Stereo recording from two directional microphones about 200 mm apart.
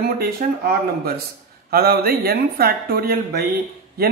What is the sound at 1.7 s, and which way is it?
Speech, 50° right (ahead or behind).